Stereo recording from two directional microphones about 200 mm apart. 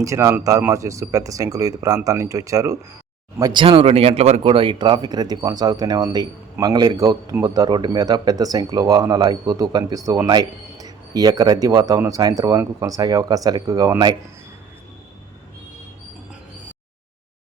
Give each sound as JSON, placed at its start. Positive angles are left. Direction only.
{"t": 0.0, "sound": "speech", "side_deg": -15}